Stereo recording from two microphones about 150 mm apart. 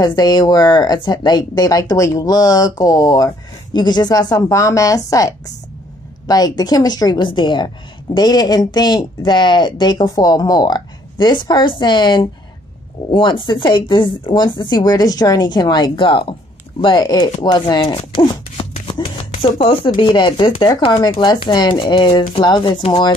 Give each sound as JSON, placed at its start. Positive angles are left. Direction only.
{"t": 0.0, "sound": "a woman's voice", "side_deg": 25}
{"t": 18.2, "sound": "a sound", "side_deg": 35}
{"t": 19.8, "sound": "speech", "side_deg": 35}